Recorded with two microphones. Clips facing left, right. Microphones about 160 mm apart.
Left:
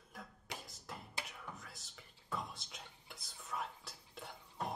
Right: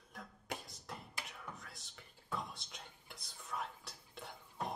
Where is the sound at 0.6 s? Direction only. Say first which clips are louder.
Even; centre (ahead or behind).